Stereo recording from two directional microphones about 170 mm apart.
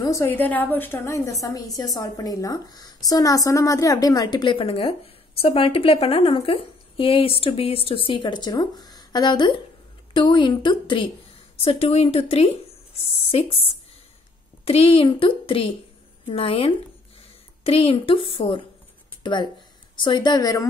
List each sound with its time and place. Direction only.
0.0 s a woman's voice: 15° left (ahead or behind); by 13.6 s 35° left (ahead or behind)
14.6 s a woman's voice: 35° left (ahead or behind)
20.0 s a woman's voice: 25° left (ahead or behind)